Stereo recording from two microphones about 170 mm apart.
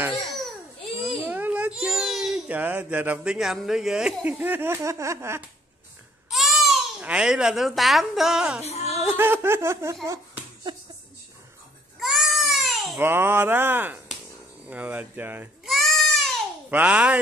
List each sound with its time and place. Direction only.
0.1 s babbling: centre (ahead or behind)
1.2 s a child's voice: 10° right (ahead or behind)
6.3 s a child's voice: centre (ahead or behind)
8.6 s music: 40° left (ahead or behind)
9.0 s speech: 10° right (ahead or behind)
10.0 s a sound: 20° right (ahead or behind)
12.0 s baby cry: centre (ahead or behind)
13.0 s speech: 15° right (ahead or behind)
14.7 s goat: 10° right (ahead or behind)
16.7 s speech: 10° right (ahead or behind)